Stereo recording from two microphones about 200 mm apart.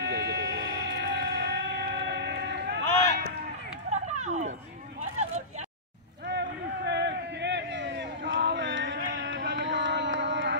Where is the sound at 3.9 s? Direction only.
35° right (ahead or behind).